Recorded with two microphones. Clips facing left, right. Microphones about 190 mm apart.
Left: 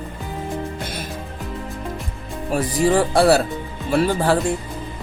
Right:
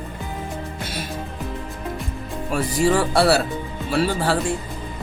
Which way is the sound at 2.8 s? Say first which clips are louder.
Left 2 dB; 50° left (ahead or behind).